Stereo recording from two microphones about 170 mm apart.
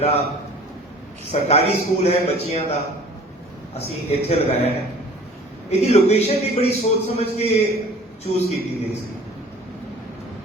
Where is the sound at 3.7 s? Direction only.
35° left (ahead or behind).